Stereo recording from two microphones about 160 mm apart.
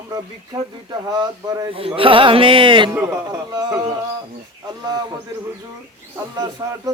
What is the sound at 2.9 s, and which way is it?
Speech, 15° right (ahead or behind).